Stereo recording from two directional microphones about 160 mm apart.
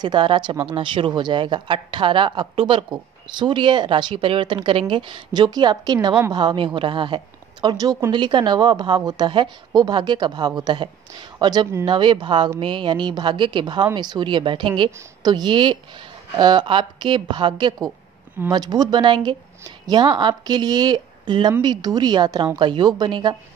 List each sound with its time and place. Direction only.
0.0 s a woman's voice: 30° right (ahead or behind)